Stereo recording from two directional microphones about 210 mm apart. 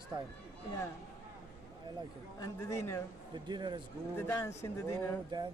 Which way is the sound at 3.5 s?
20° right (ahead or behind).